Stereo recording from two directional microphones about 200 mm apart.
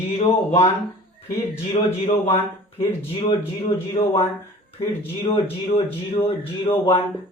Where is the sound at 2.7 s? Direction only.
30° left (ahead or behind).